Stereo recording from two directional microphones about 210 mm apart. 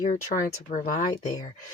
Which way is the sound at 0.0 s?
40° left (ahead or behind).